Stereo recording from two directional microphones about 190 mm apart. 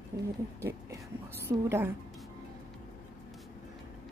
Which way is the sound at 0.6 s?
15° right (ahead or behind).